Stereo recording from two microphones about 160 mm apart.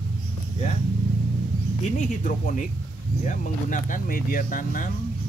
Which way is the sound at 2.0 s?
55° left (ahead or behind).